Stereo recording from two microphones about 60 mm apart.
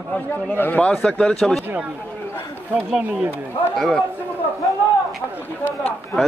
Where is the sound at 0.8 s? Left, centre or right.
Centre.